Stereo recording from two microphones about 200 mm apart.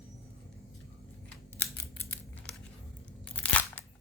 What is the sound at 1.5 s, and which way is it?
Scissors, 10° left (ahead or behind).